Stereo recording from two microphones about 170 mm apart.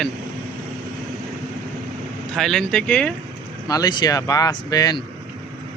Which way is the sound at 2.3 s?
Centre (ahead or behind).